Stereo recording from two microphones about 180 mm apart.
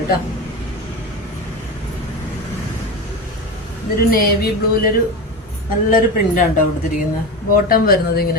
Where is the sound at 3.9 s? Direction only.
55° left (ahead or behind).